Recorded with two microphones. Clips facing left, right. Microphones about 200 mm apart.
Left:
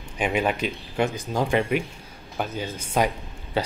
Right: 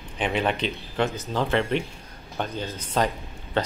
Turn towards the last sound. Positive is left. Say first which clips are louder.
# even
turn(degrees=10)  # may be behind; listen again after turning